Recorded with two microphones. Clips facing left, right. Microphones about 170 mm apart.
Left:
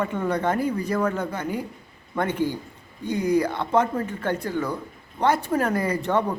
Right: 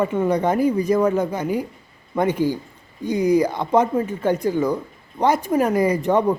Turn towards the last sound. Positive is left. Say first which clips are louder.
# right 5 dB
turn(degrees=-10)  # may be behind; listen again after turning